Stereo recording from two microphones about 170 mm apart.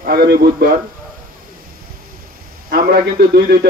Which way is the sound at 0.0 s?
65° right (ahead or behind).